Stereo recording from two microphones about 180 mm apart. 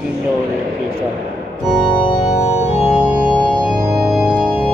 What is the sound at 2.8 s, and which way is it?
Organ, 5° right (ahead or behind).